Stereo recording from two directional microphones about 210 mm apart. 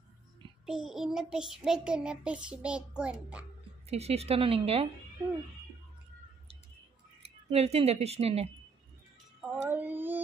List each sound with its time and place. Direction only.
0.7 s child singing: centre (ahead or behind)
3.9 s a woman's voice: 30° right (ahead or behind)
7.2 s speech: 30° right (ahead or behind)
9.6 s a sound: 10° right (ahead or behind)